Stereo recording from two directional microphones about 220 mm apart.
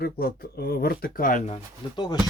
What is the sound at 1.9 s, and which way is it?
Speech, 20° left (ahead or behind).